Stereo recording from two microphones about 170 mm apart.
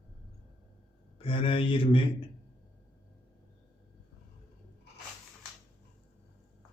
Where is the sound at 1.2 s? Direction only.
30° left (ahead or behind).